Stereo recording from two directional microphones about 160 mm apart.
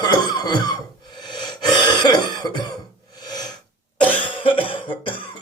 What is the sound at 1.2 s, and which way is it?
Throat clearing, 30° left (ahead or behind).